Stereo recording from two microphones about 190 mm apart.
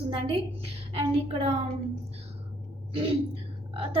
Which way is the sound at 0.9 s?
30° right (ahead or behind).